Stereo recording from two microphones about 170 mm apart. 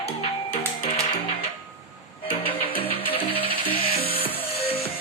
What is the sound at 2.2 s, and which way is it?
Music, 30° left (ahead or behind).